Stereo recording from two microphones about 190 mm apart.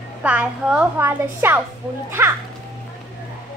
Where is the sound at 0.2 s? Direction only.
5° right (ahead or behind).